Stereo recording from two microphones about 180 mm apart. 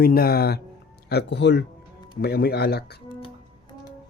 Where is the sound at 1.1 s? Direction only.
75° left (ahead or behind).